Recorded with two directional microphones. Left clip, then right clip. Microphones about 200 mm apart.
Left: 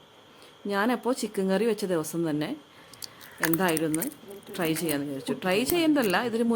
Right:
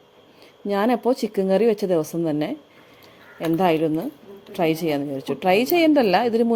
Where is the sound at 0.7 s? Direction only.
20° right (ahead or behind).